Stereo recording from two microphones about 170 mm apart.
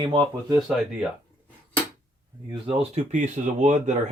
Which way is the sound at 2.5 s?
35° right (ahead or behind).